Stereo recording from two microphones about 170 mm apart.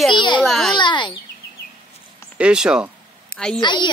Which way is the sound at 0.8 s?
25° left (ahead or behind).